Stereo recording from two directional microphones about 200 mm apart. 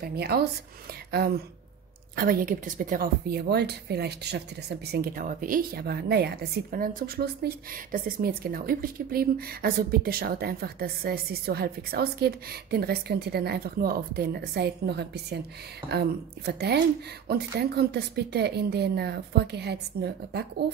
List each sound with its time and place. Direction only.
0.0 s a woman's voice: 50° right (ahead or behind)